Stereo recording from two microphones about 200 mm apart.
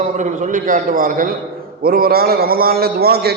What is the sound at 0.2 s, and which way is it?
A man's voice, 40° right (ahead or behind).